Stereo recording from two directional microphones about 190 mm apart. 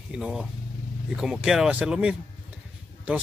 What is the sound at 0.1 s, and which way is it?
Speech, 5° right (ahead or behind).